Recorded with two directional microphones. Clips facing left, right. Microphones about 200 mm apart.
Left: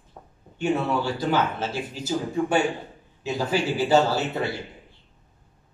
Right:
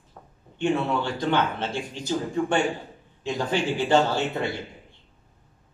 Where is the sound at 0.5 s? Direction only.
5° left (ahead or behind).